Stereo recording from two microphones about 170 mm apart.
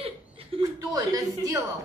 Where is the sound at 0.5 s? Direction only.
35° right (ahead or behind).